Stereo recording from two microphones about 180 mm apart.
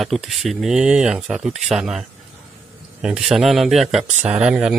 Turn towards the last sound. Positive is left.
turn(degrees=-5)  # may be behind; listen again after turning